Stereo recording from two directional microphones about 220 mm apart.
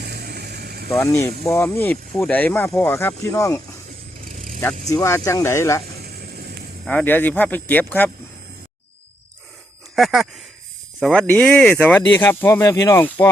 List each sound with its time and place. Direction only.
0.0 s vehicle: 45° right (ahead or behind)
0.9 s speech: 10° left (ahead or behind)
4.4 s vehicle: 35° right (ahead or behind)
4.9 s speech: 10° left (ahead or behind)
6.8 s speech: 5° left (ahead or behind)
9.9 s speech: centre (ahead or behind)